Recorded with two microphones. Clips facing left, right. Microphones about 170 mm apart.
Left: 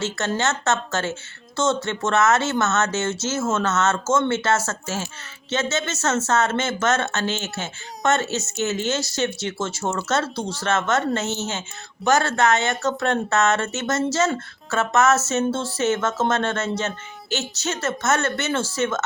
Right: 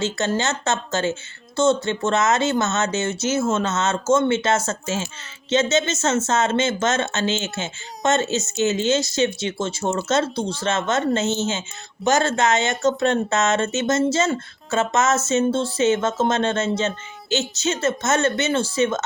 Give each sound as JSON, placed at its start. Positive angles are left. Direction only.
{"t": 0.3, "sound": "speech", "side_deg": -15}
{"t": 12.0, "sound": "speech", "side_deg": 0}
{"t": 12.5, "sound": "speech", "side_deg": -20}